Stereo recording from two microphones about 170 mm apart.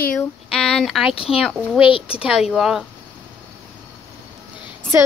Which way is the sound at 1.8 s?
30° left (ahead or behind).